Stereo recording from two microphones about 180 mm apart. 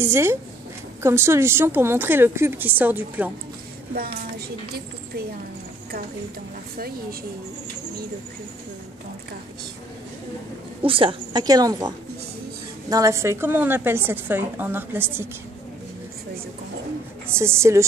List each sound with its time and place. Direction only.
0.0 s a woman's voice: 15° right (ahead or behind)
10.8 s a woman's voice: 30° right (ahead or behind)
12.9 s a woman's voice: 15° right (ahead or behind)
17.3 s a woman's voice: 15° right (ahead or behind)